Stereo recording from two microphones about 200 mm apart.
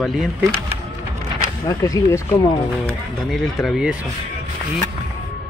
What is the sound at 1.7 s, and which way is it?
Speech, 15° left (ahead or behind).